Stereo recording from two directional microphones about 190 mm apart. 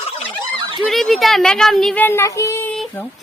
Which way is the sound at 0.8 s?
Centre (ahead or behind).